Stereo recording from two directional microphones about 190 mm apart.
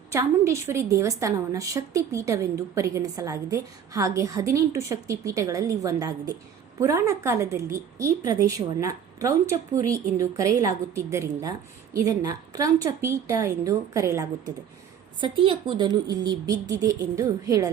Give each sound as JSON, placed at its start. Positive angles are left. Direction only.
{"t": 0.1, "sound": "a woman's voice", "side_deg": -15}
{"t": 15.2, "sound": "speech", "side_deg": -25}